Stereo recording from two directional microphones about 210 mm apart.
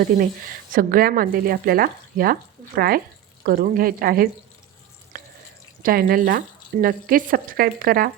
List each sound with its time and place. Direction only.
0.7 s speech: 40° right (ahead or behind)
5.1 s drip: 40° right (ahead or behind)
5.8 s speech: 45° right (ahead or behind)